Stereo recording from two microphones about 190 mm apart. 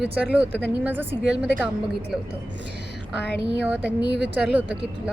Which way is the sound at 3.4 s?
65° right (ahead or behind).